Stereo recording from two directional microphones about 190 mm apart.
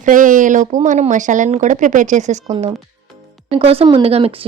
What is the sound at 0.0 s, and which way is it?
Speech, 45° right (ahead or behind).